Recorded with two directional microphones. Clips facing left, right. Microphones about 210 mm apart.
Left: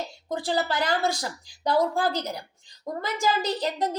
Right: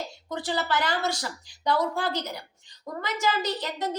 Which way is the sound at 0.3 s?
35° left (ahead or behind).